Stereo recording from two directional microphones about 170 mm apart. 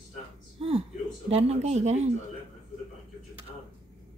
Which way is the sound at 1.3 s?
40° right (ahead or behind).